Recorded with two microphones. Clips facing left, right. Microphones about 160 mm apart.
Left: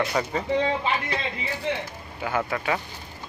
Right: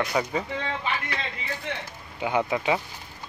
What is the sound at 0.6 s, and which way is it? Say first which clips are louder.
Speech: left 4 dB; 25° left (ahead or behind).